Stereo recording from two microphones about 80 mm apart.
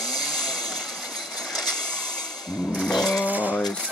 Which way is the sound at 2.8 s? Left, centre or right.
Centre.